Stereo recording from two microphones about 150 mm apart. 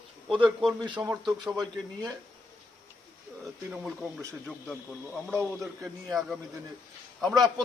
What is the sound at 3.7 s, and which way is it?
Speech, 10° right (ahead or behind).